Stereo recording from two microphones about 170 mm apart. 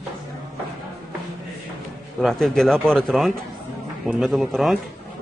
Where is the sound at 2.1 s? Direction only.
Centre (ahead or behind).